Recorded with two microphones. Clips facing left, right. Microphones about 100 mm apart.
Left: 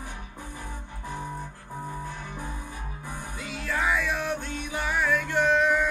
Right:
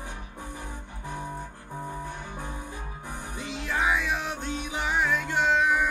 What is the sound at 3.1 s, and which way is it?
Music, 20° right (ahead or behind).